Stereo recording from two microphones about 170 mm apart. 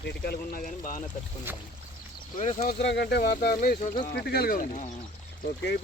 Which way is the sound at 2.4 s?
40° left (ahead or behind).